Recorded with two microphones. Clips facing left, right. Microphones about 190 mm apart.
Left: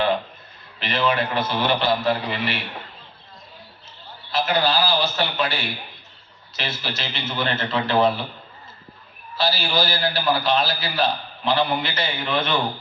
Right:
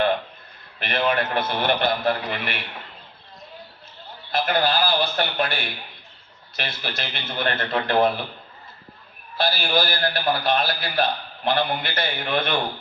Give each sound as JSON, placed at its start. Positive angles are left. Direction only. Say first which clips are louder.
{"t": 0.8, "sound": "a man's voice", "louder": "left 1 dB", "side_deg": -55}
{"t": 4.3, "sound": "a man's voice", "louder": "even", "side_deg": -55}
{"t": 9.4, "sound": "a man's voice", "louder": "even", "side_deg": -55}